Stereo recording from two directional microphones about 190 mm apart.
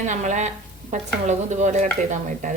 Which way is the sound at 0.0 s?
40° right (ahead or behind).